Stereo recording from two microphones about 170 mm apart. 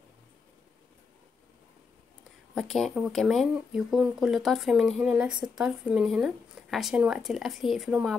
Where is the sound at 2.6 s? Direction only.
Centre (ahead or behind).